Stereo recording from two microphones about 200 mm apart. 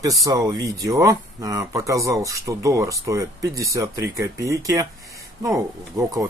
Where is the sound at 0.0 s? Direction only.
15° right (ahead or behind).